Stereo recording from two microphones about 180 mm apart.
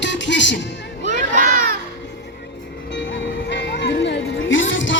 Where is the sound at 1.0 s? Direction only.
45° right (ahead or behind).